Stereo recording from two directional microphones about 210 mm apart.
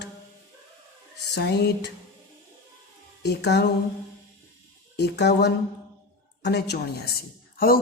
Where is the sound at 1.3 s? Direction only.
50° left (ahead or behind).